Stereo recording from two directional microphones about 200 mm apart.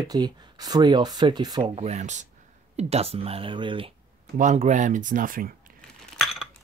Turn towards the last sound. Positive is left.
turn(degrees=0)  # may be behind; listen again after turning